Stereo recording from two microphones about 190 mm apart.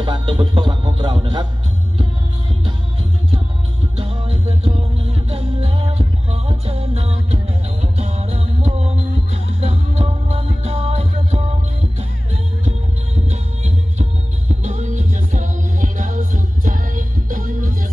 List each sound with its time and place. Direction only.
0.0 s speech: 25° right (ahead or behind)
3.9 s music: 25° right (ahead or behind)
12.6 s music: 35° right (ahead or behind)
14.6 s music: 40° right (ahead or behind)